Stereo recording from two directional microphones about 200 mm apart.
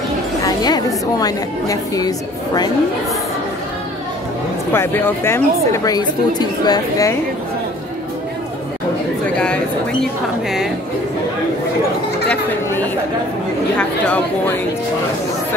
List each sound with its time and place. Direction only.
0.4 s a woman's voice: 20° left (ahead or behind)
4.7 s speech: 10° left (ahead or behind)
12.3 s chatter: 10° left (ahead or behind)
13.7 s speech: 5° left (ahead or behind)